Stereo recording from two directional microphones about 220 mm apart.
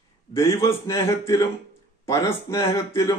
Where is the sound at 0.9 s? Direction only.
15° left (ahead or behind).